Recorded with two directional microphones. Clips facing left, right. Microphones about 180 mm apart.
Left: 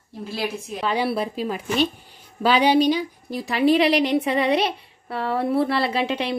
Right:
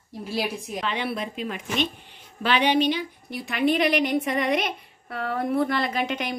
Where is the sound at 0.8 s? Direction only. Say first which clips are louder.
Left 7 dB; 35° left (ahead or behind).